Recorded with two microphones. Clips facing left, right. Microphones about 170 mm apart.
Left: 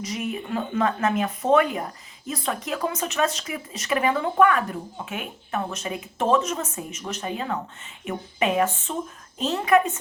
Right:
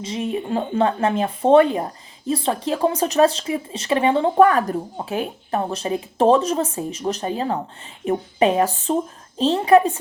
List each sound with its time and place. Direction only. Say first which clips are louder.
0.0 s speech: right 5 dB; 30° right (ahead or behind)